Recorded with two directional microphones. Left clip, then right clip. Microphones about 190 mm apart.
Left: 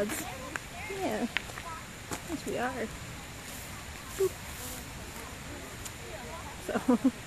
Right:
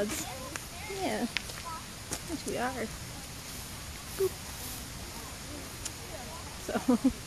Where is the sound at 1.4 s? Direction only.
35° left (ahead or behind).